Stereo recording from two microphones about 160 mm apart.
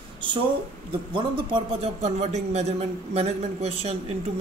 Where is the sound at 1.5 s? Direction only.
35° right (ahead or behind).